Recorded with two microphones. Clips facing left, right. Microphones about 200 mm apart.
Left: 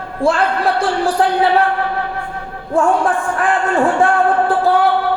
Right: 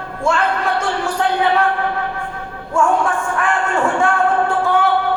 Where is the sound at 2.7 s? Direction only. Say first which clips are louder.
Left 2 dB; 35° left (ahead or behind).